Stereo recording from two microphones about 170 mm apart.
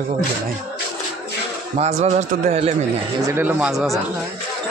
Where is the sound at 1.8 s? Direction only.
40° right (ahead or behind).